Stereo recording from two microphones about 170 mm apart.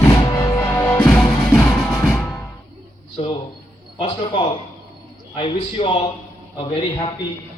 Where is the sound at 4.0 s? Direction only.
35° left (ahead or behind).